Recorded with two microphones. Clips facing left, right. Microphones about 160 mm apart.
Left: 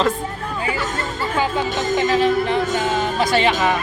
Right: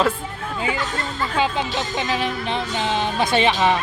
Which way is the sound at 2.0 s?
20° right (ahead or behind).